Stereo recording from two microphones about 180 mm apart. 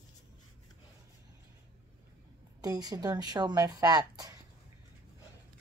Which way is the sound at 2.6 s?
20° right (ahead or behind).